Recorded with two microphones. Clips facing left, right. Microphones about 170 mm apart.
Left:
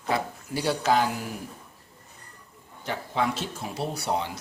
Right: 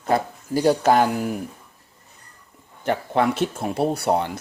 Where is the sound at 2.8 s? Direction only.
60° right (ahead or behind).